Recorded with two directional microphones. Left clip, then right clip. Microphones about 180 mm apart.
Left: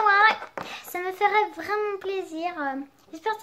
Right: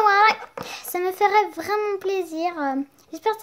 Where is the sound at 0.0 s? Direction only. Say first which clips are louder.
Right 2 dB; 50° right (ahead or behind).